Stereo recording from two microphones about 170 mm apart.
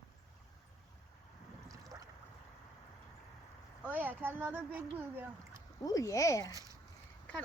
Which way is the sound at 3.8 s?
10° right (ahead or behind).